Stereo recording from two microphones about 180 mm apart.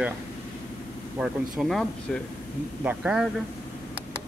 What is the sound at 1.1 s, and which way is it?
Speech, 5° right (ahead or behind).